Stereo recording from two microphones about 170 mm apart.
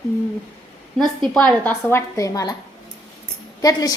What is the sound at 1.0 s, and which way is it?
A woman's voice, 5° left (ahead or behind).